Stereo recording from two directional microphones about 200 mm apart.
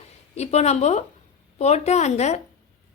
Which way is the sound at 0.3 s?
35° left (ahead or behind).